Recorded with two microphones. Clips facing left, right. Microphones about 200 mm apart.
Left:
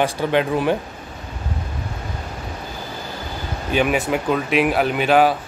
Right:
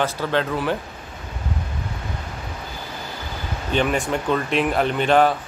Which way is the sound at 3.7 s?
10° left (ahead or behind).